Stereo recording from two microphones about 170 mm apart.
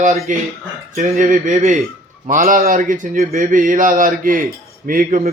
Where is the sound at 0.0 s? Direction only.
50° right (ahead or behind).